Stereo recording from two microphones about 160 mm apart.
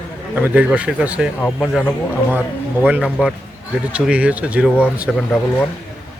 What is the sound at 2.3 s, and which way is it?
Speech, 10° right (ahead or behind).